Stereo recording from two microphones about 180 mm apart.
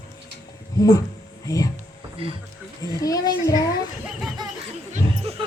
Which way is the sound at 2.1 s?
30° right (ahead or behind).